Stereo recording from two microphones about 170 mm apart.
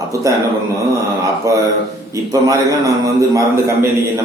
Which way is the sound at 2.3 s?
20° right (ahead or behind).